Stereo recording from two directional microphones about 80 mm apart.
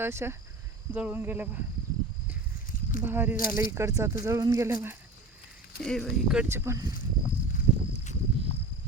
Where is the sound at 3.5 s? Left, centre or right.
Right.